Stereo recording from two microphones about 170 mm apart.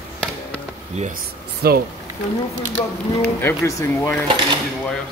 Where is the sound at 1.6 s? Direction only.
65° right (ahead or behind).